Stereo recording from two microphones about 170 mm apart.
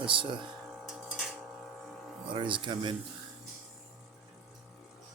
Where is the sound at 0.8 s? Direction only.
Centre (ahead or behind).